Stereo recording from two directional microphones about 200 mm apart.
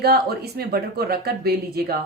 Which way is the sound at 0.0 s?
50° right (ahead or behind).